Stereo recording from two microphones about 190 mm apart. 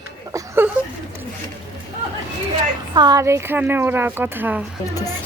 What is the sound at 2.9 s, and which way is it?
Speech, 20° right (ahead or behind).